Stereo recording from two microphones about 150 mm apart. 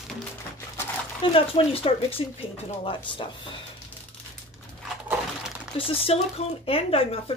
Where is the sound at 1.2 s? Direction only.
40° left (ahead or behind).